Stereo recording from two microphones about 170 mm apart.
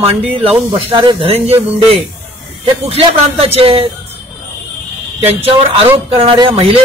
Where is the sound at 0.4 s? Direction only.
30° right (ahead or behind).